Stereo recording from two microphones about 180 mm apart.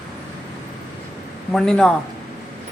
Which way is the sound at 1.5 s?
5° left (ahead or behind).